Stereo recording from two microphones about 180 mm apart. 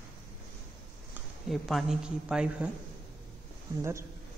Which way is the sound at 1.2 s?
Centre (ahead or behind).